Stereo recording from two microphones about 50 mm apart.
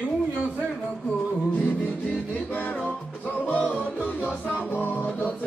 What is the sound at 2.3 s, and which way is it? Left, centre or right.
Music, left.